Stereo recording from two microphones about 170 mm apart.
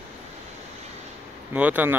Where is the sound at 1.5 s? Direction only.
10° right (ahead or behind).